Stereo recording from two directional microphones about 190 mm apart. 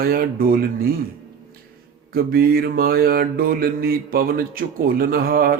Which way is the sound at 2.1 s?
55° right (ahead or behind).